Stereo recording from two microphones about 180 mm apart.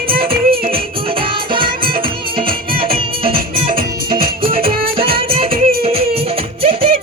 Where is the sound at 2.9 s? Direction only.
30° right (ahead or behind).